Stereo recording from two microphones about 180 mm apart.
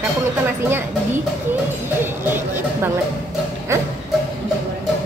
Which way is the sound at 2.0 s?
10° right (ahead or behind).